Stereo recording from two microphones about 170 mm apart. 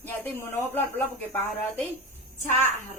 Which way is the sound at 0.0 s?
10° left (ahead or behind).